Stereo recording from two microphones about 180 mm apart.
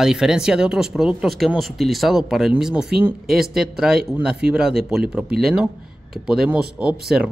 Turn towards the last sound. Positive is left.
turn(degrees=-5)  # may be behind; listen again after turning